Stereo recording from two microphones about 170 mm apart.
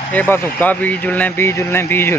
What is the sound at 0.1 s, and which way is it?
A man's voice, 10° left (ahead or behind).